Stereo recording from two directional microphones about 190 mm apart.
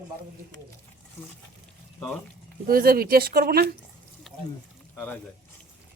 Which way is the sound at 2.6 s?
50° right (ahead or behind).